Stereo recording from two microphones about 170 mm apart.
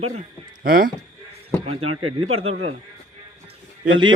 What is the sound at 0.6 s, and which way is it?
Speech, 60° right (ahead or behind).